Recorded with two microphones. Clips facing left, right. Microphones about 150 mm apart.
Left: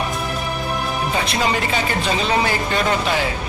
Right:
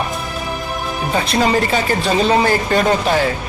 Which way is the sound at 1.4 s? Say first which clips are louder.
Right 6 dB; 40° right (ahead or behind).